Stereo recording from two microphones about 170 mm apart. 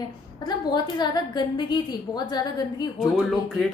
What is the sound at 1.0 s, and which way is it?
A woman's voice, 25° left (ahead or behind).